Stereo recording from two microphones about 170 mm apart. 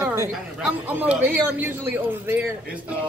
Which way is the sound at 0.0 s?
20° right (ahead or behind).